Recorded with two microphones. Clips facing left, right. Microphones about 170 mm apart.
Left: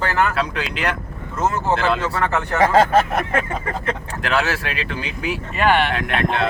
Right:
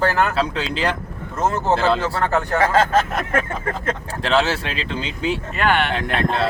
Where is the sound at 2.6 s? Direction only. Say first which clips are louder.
Left 3 dB; 15° left (ahead or behind).